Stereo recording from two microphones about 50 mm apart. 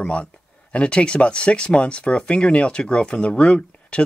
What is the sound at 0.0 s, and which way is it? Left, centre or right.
Speech, left.